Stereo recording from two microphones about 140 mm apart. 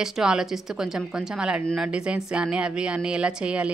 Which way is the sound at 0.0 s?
5° right (ahead or behind).